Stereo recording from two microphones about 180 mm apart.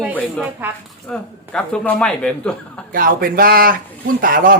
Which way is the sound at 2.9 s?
50° right (ahead or behind).